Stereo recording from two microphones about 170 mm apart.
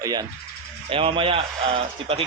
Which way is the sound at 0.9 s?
30° right (ahead or behind).